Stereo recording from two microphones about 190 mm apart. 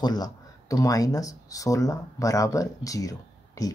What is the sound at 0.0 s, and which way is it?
Speech, 20° left (ahead or behind).